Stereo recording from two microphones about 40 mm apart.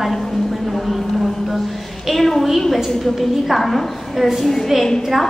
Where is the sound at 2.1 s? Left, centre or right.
Centre.